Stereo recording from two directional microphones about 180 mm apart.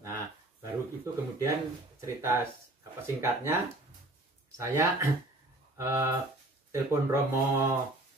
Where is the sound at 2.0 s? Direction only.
15° right (ahead or behind).